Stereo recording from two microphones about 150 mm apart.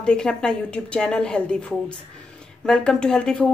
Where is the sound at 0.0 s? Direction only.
5° left (ahead or behind).